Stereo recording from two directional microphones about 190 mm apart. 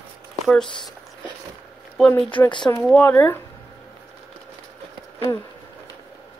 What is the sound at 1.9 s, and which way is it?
Speech, 5° left (ahead or behind).